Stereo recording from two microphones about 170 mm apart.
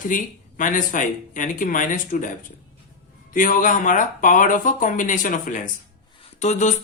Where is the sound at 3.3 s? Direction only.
55° left (ahead or behind).